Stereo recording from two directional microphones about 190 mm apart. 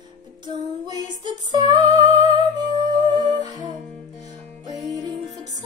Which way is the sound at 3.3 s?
20° right (ahead or behind).